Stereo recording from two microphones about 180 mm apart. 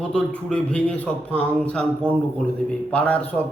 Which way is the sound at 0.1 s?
5° left (ahead or behind).